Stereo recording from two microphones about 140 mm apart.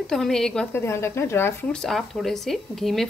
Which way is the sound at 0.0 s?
5° left (ahead or behind).